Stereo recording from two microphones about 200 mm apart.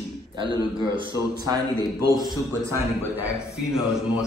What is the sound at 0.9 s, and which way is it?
A man's voice, 20° right (ahead or behind).